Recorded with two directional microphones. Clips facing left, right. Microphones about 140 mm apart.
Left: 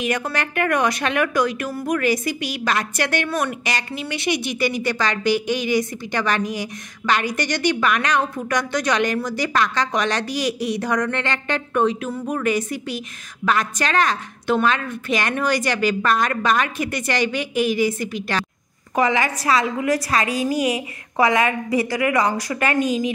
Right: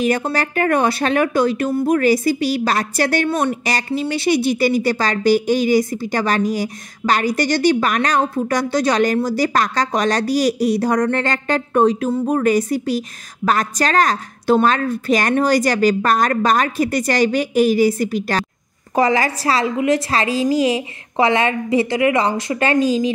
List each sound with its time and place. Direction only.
0.0 s a woman's voice: 35° right (ahead or behind)